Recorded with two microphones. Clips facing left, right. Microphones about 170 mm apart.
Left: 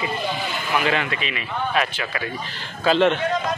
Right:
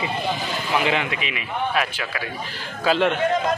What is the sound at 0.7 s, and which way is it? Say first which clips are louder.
A man's voice: even; 20° right (ahead or behind).